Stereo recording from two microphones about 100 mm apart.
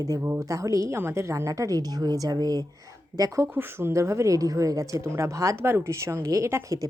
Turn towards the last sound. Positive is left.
turn(degrees=-30)  # may be behind; listen again after turning